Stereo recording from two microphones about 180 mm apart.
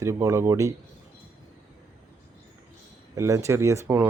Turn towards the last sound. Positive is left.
turn(degrees=-15)  # may be behind; listen again after turning